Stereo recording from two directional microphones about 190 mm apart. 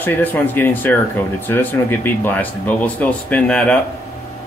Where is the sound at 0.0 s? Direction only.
10° left (ahead or behind).